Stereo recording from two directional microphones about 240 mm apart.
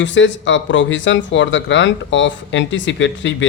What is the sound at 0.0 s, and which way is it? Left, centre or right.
Speech, left.